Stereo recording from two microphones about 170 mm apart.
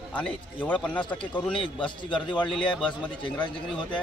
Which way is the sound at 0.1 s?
10° left (ahead or behind).